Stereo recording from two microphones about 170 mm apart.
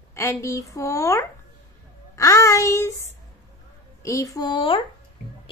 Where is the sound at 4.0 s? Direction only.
20° left (ahead or behind).